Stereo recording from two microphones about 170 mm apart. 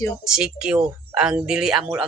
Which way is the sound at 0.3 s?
5° right (ahead or behind).